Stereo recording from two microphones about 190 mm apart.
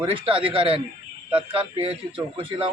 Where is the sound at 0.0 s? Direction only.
25° right (ahead or behind).